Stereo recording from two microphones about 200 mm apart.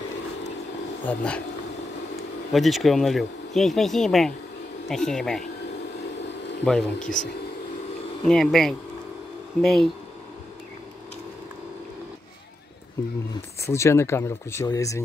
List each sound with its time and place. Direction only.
1.0 s speech: 5° left (ahead or behind)
2.5 s speech: centre (ahead or behind)
6.6 s speech: 5° left (ahead or behind)
8.3 s speech: centre (ahead or behind)
13.6 s speech: 15° left (ahead or behind)